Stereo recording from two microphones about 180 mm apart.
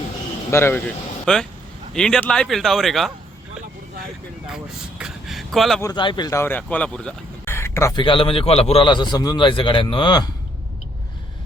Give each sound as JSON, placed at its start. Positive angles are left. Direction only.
{"t": 0.5, "sound": "a man's voice", "side_deg": 10}
{"t": 4.5, "sound": "vehicle", "side_deg": -5}
{"t": 5.8, "sound": "speech", "side_deg": 25}
{"t": 8.0, "sound": "a man's voice", "side_deg": 30}